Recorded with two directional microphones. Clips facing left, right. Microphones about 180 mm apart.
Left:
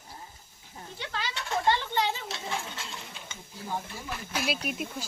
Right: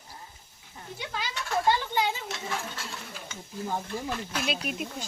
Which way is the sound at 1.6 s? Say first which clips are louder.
Even; 10° right (ahead or behind).